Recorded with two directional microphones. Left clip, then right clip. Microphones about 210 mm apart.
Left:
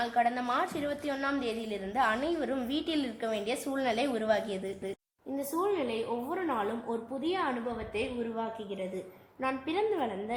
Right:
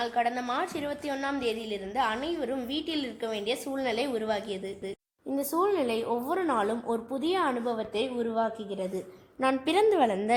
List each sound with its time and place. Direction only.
0.0 s a woman's voice: 5° right (ahead or behind)
5.5 s a woman's voice: 30° right (ahead or behind)
9.4 s a woman's voice: 45° right (ahead or behind)